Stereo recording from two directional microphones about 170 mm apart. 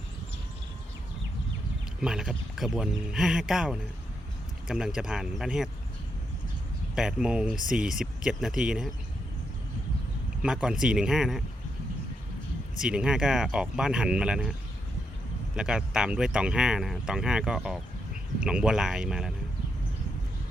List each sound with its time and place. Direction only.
2.0 s speech: 5° right (ahead or behind)
6.9 s speech: 5° right (ahead or behind)
10.4 s speech: 5° right (ahead or behind)
12.8 s speech: 5° right (ahead or behind)
15.5 s speech: 5° right (ahead or behind)